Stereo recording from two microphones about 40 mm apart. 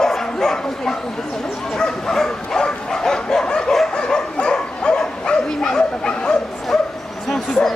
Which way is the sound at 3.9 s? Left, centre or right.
Left.